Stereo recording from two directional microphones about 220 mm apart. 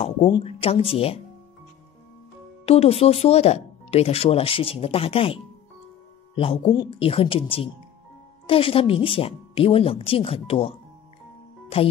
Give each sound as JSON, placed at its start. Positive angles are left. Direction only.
{"t": 0.0, "sound": "speech", "side_deg": 25}
{"t": 2.6, "sound": "speech", "side_deg": 30}